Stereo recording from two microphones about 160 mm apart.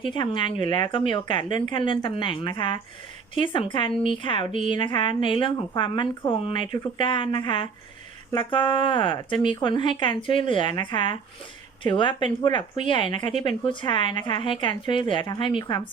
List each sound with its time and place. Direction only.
0.1 s a woman's voice: 30° left (ahead or behind)
4.5 s speech: 50° right (ahead or behind)
4.8 s a woman's voice: 30° left (ahead or behind)